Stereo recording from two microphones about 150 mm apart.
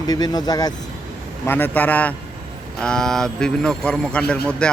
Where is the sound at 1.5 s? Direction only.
10° left (ahead or behind).